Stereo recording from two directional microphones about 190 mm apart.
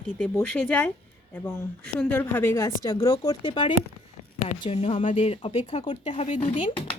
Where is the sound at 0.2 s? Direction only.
5° left (ahead or behind).